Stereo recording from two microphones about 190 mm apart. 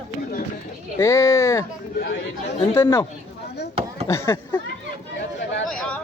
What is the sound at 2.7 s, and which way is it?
Speech, 15° left (ahead or behind).